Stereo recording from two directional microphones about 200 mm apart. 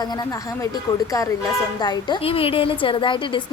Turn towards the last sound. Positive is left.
turn(degrees=25)  # may be behind; listen again after turning